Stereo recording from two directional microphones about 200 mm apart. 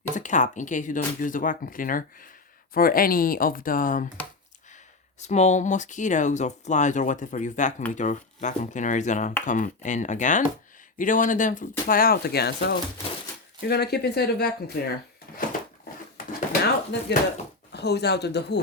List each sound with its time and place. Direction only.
0.1 s speech: 40° left (ahead or behind)
5.2 s speech: 35° left (ahead or behind); by 14.9 s 50° left (ahead or behind)
16.1 s a sound: 50° left (ahead or behind)
17.7 s speech: 55° left (ahead or behind)